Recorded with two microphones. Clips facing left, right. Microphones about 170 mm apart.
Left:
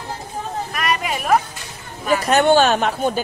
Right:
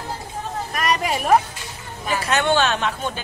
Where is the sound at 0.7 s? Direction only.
35° right (ahead or behind).